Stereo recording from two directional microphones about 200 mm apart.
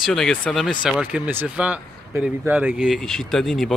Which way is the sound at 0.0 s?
Centre (ahead or behind).